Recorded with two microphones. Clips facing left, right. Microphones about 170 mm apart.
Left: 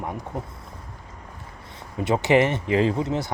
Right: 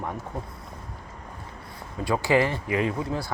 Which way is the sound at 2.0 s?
20° left (ahead or behind).